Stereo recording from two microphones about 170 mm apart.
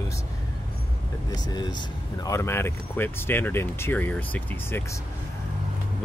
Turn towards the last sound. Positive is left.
turn(degrees=15)  # may be behind; listen again after turning